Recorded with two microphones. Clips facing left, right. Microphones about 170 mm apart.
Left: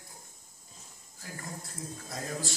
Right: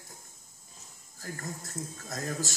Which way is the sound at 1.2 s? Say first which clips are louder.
Right 3 dB; 45° right (ahead or behind).